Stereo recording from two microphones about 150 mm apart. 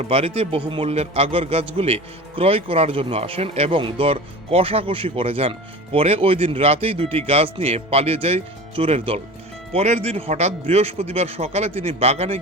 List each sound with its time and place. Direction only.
0.0 s a man's voice: 40° right (ahead or behind)